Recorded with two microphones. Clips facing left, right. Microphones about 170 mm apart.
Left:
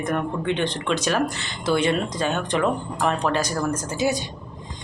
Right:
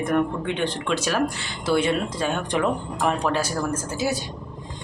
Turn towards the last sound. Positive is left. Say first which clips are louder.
# left 2 dB
turn(degrees=-5)  # may be behind; listen again after turning